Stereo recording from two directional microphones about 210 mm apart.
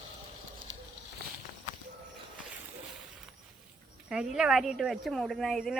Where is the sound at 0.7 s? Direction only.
65° right (ahead or behind).